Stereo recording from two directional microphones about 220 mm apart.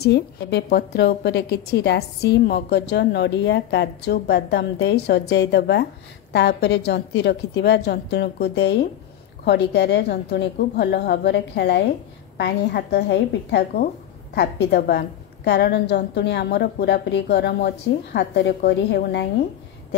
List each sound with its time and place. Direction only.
0.0 s a woman's voice: 50° left (ahead or behind)